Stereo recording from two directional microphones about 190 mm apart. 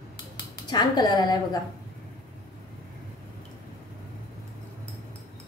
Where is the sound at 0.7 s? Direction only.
20° left (ahead or behind).